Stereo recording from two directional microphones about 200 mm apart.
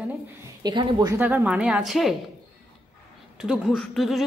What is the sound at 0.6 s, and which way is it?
Speech, 20° right (ahead or behind).